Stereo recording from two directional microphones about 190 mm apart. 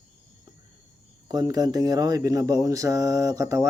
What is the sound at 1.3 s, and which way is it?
Speech, 20° right (ahead or behind).